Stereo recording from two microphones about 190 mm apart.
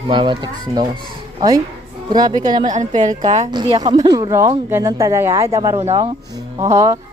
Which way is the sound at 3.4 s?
25° right (ahead or behind).